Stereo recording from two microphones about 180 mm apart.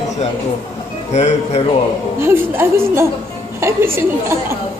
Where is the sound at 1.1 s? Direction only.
40° left (ahead or behind).